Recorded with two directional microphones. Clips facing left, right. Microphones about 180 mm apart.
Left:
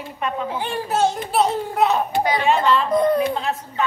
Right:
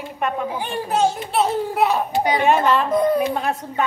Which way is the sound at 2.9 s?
5° right (ahead or behind).